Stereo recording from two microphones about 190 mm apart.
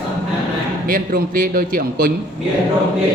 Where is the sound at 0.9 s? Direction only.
50° right (ahead or behind).